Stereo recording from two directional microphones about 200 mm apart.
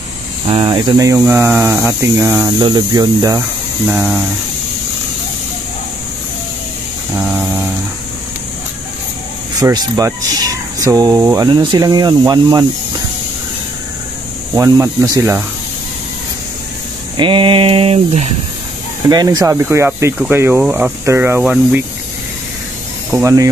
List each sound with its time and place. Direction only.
0.5 s speech: 25° right (ahead or behind)
3.8 s speech: 5° right (ahead or behind)
7.2 s a sound: 10° right (ahead or behind)
9.6 s speech: 20° right (ahead or behind)
14.5 s speech: 15° right (ahead or behind)
17.2 s speech: 25° right (ahead or behind)
19.0 s speech: 20° right (ahead or behind)
23.1 s speech: 15° right (ahead or behind)